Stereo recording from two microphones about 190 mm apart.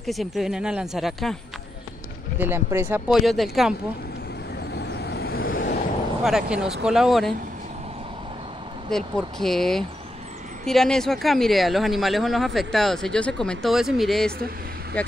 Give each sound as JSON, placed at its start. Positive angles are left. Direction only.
{"t": 0.0, "sound": "speech", "side_deg": 0}
{"t": 2.3, "sound": "speech", "side_deg": -10}
{"t": 4.7, "sound": "vehicle", "side_deg": 60}
{"t": 6.2, "sound": "speech", "side_deg": -5}
{"t": 8.9, "sound": "speech", "side_deg": 0}